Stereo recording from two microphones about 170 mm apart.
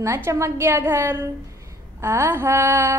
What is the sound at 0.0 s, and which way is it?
Child singing, 15° right (ahead or behind).